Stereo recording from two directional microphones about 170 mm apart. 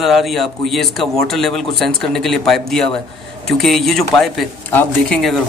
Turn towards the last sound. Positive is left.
turn(degrees=0)  # may be behind; listen again after turning